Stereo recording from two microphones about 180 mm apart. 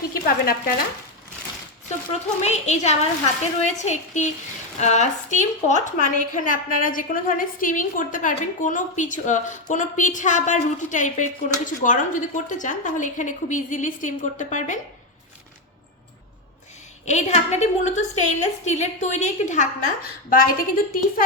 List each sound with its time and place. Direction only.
0.1 s a woman's voice: 55° left (ahead or behind)
2.4 s a woman's voice: 40° left (ahead or behind)
17.1 s a woman's voice: 40° left (ahead or behind)